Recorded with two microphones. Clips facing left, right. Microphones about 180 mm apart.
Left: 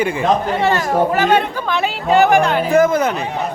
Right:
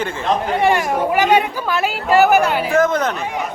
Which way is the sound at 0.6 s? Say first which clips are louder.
Even; 10° right (ahead or behind).